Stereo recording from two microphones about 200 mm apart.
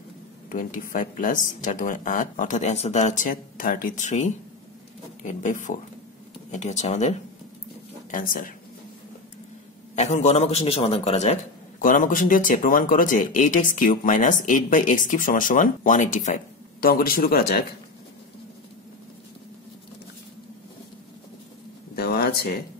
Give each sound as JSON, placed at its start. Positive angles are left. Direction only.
{"t": 0.5, "sound": "speech", "side_deg": 40}
{"t": 9.9, "sound": "speech", "side_deg": 35}
{"t": 21.9, "sound": "a sound", "side_deg": 50}